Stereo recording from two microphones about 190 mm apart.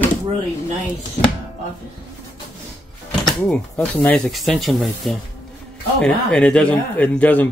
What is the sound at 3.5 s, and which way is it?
Speech, 5° left (ahead or behind).